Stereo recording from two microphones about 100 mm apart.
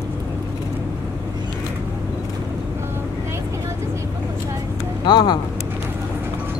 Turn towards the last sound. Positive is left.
turn(degrees=50)  # may be behind; listen again after turning